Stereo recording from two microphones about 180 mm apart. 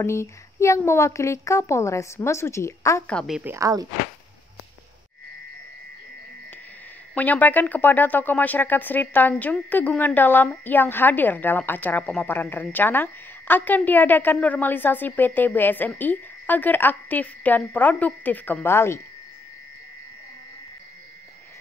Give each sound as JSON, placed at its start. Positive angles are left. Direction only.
{"t": 0.0, "sound": "speech", "side_deg": 15}
{"t": 3.1, "sound": "a woman's voice", "side_deg": 0}
{"t": 3.5, "sound": "speech", "side_deg": -20}
{"t": 7.2, "sound": "speech", "side_deg": 10}